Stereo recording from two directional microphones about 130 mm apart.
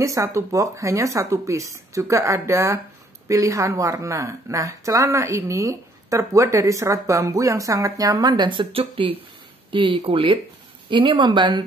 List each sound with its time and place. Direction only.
0.0 s speech: 25° right (ahead or behind)